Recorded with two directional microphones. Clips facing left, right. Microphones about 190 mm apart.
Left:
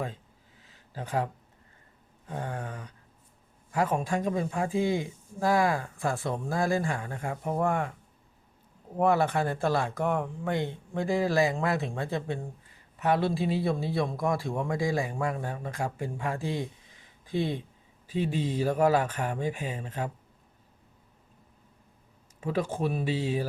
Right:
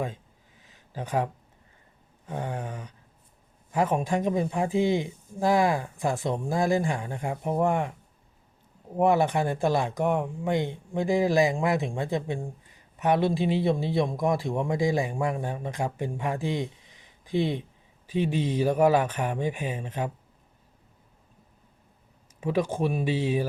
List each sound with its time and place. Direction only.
0.9 s a man's voice: 20° right (ahead or behind)
9.0 s a man's voice: 20° right (ahead or behind)
22.4 s speech: 15° right (ahead or behind)